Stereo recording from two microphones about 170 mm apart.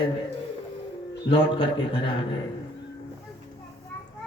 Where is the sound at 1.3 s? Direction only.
30° left (ahead or behind).